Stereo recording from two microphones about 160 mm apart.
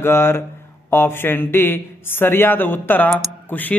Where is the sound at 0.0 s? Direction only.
15° left (ahead or behind).